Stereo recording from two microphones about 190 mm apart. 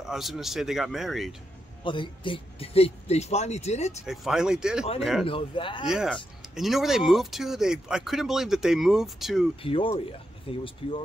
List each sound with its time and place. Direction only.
0.0 s speech: centre (ahead or behind)
1.9 s speech: 25° left (ahead or behind)
4.0 s speech: centre (ahead or behind)
5.2 s speech: 25° left (ahead or behind)
5.9 s speech: 5° right (ahead or behind)
9.6 s speech: 30° left (ahead or behind)